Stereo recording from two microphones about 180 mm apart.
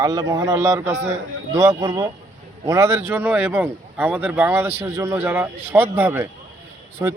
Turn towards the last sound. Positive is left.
turn(degrees=-15)  # may be behind; listen again after turning